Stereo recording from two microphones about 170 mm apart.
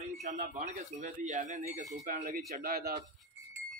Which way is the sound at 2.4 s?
60° right (ahead or behind).